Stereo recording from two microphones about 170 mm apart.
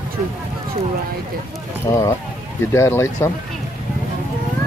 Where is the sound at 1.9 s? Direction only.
15° left (ahead or behind).